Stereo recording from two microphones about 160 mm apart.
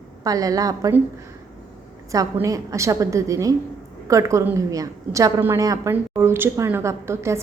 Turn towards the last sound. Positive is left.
turn(degrees=-15)  # may be behind; listen again after turning